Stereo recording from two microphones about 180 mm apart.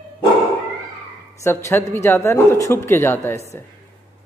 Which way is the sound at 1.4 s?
15° left (ahead or behind).